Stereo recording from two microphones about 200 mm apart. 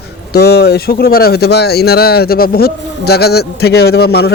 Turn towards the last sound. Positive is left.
turn(degrees=55)  # may be behind; listen again after turning